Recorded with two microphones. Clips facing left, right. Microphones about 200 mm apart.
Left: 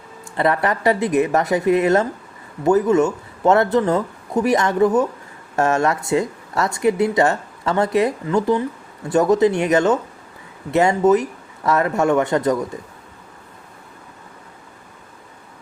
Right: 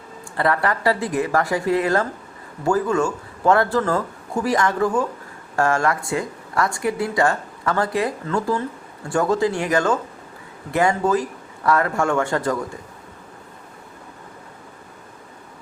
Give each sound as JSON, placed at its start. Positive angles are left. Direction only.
{"t": 0.3, "sound": "speech", "side_deg": 20}